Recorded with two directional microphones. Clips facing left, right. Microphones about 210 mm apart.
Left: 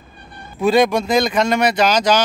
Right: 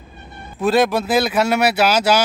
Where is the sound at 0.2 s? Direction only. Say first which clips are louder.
Right 1 dB; 20° right (ahead or behind).